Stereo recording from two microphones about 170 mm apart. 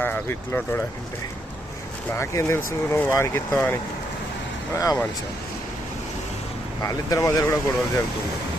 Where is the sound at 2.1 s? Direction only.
15° left (ahead or behind).